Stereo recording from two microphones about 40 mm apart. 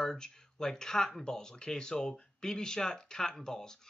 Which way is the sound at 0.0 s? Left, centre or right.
Centre.